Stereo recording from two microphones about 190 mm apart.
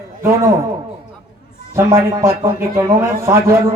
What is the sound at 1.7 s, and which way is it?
A man's voice, 15° right (ahead or behind).